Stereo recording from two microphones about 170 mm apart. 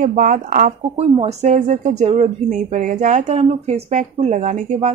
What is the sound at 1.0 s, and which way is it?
Speech, 40° right (ahead or behind).